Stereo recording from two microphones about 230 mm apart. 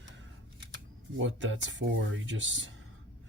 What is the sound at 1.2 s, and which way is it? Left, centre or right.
Speech, right.